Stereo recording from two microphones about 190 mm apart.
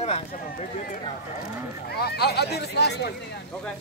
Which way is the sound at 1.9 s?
55° left (ahead or behind).